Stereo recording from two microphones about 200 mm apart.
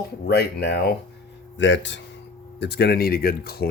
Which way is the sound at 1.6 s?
65° left (ahead or behind).